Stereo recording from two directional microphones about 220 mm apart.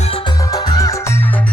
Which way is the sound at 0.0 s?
25° left (ahead or behind).